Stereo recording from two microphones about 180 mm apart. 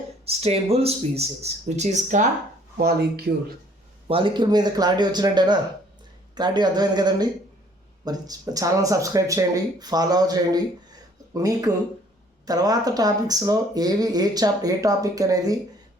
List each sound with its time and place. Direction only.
0.3 s speech: 35° right (ahead or behind)
2.7 s speech: 60° right (ahead or behind)
4.1 s speech: 25° right (ahead or behind)